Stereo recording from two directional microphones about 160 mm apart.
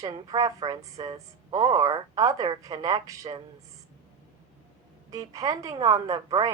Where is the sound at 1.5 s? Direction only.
50° right (ahead or behind).